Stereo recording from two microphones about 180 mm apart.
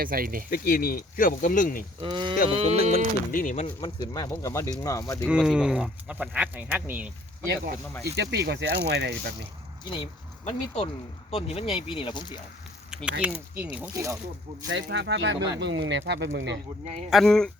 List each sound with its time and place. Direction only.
0.0 s speech: 55° right (ahead or behind)
0.5 s speech: 55° left (ahead or behind)
2.0 s speech: 25° right (ahead or behind)
2.5 s sheep: 35° right (ahead or behind)
3.3 s speech: 45° left (ahead or behind)
3.8 s speech: 25° left (ahead or behind)
5.3 s speech: 5° right (ahead or behind)
7.4 s speech: 65° right (ahead or behind)
9.8 s speech: 30° left (ahead or behind)
12.9 s speech: 5° right (ahead or behind)
14.7 s speech: 75° right (ahead or behind)
17.1 s speech: centre (ahead or behind)